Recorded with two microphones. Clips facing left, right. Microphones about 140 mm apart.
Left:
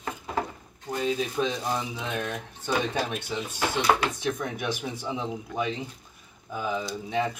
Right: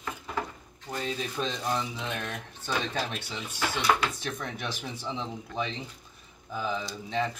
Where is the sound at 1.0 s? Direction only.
5° left (ahead or behind).